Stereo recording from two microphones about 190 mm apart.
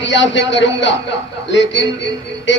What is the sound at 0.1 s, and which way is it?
A man's voice, 70° left (ahead or behind).